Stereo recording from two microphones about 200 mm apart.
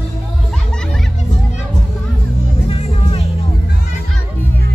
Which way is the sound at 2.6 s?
30° left (ahead or behind).